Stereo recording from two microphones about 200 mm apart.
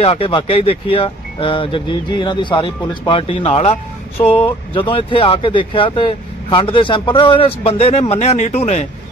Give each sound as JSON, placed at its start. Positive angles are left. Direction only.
{"t": 0.0, "sound": "speech", "side_deg": 30}